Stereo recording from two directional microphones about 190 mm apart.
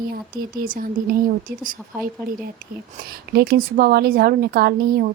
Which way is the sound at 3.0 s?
55° right (ahead or behind).